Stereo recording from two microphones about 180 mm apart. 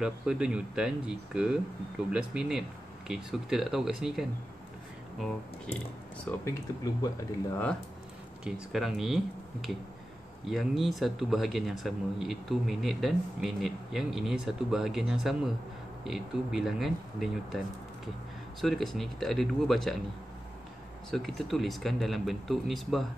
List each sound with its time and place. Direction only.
0.0 s speech: 5° right (ahead or behind)
6.2 s speech: 15° left (ahead or behind)
8.5 s speech: 5° right (ahead or behind)
18.6 s speech: centre (ahead or behind)
21.1 s speech: centre (ahead or behind)